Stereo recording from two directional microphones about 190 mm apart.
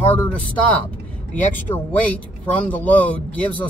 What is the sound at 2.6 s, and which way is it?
Speech, 10° left (ahead or behind).